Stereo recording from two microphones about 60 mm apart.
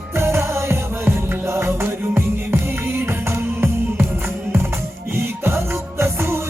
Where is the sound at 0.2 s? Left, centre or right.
Right.